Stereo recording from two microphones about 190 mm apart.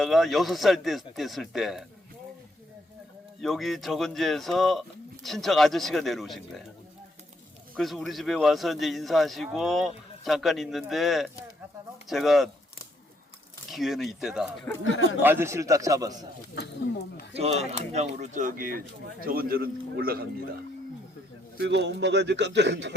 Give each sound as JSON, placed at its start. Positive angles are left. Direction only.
{"t": 0.0, "sound": "speech", "side_deg": 0}
{"t": 3.4, "sound": "speech", "side_deg": 0}
{"t": 7.8, "sound": "speech", "side_deg": 0}
{"t": 13.7, "sound": "a man's voice", "side_deg": 0}
{"t": 16.6, "sound": "speech", "side_deg": 65}
{"t": 17.3, "sound": "a man's voice", "side_deg": -35}
{"t": 21.6, "sound": "speech", "side_deg": -65}